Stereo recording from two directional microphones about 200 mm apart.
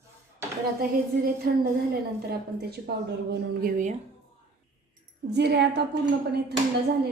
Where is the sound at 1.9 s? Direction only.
50° right (ahead or behind).